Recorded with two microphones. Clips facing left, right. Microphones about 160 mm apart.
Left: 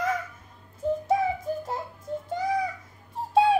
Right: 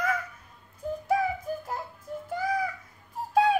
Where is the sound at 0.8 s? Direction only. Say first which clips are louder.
Left 6 dB; 25° left (ahead or behind).